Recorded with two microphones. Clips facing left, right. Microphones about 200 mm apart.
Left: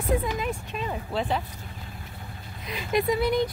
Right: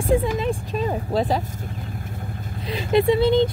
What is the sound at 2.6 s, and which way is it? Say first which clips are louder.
Speech: right 7 dB; 30° right (ahead or behind).